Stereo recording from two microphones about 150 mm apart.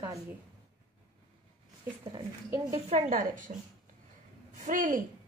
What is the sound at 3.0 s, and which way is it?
Speech, 60° right (ahead or behind).